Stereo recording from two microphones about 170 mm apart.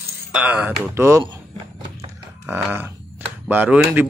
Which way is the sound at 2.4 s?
10° right (ahead or behind).